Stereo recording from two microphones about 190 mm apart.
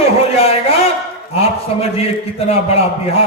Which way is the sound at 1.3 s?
30° left (ahead or behind).